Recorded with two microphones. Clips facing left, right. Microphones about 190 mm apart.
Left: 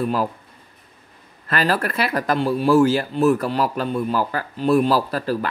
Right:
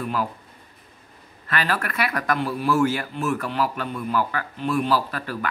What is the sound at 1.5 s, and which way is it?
Speech, 35° left (ahead or behind).